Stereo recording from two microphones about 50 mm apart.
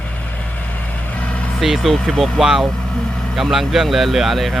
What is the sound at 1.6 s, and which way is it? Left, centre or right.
Speech, centre.